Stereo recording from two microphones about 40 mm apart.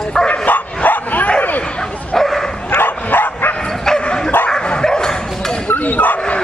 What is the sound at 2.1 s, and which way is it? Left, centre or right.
Bow-wow, centre.